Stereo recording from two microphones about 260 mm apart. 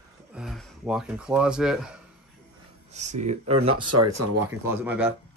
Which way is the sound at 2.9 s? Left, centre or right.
Right.